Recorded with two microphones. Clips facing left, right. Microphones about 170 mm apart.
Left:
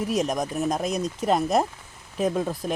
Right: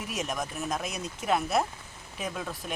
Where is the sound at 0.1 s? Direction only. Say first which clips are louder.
Left 5 dB; 35° left (ahead or behind).